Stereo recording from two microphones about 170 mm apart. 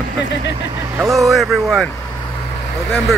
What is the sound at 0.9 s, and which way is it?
Speech, centre (ahead or behind).